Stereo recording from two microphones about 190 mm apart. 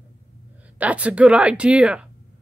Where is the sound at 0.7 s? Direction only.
5° right (ahead or behind).